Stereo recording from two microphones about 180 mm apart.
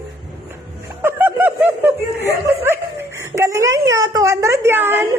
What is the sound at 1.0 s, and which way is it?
Snicker, 10° right (ahead or behind).